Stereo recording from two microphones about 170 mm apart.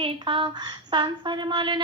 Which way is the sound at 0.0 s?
30° right (ahead or behind).